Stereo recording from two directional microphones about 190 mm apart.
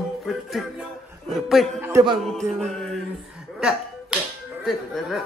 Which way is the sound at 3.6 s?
5° right (ahead or behind).